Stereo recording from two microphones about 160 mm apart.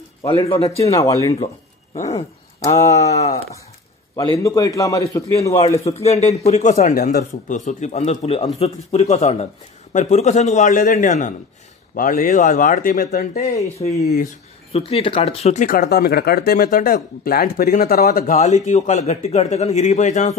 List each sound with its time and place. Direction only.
0.3 s a man's voice: 40° left (ahead or behind)
0.9 s a man's voice: 20° left (ahead or behind)
2.0 s a man's voice: 40° left (ahead or behind)
2.6 s a man's voice: 20° left (ahead or behind)
2.9 s a man's voice: 45° left (ahead or behind)
4.1 s a man's voice: 25° left (ahead or behind)
5.9 s a man's voice: 40° left (ahead or behind)
7.0 s a man's voice: 60° left (ahead or behind)
13.8 s a man's voice: 35° left (ahead or behind); by 18.3 s 65° left (ahead or behind)
18.3 s a man's voice: 45° left (ahead or behind)